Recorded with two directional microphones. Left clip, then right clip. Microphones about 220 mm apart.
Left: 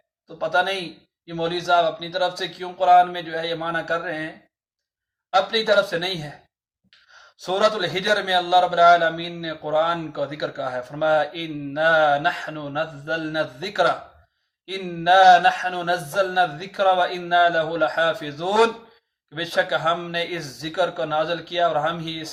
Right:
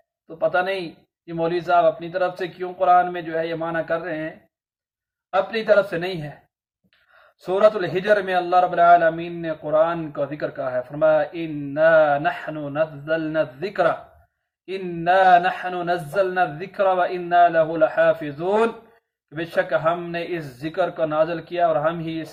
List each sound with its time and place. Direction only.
0.3 s speech: 15° left (ahead or behind)
5.3 s speech: 15° left (ahead or behind)
7.4 s speech: 15° left (ahead or behind)